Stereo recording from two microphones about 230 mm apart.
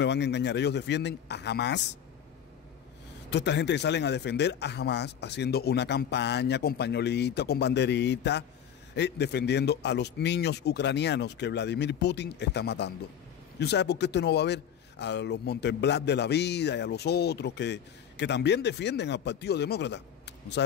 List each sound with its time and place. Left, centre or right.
0.0 s speech: left
3.3 s speech: left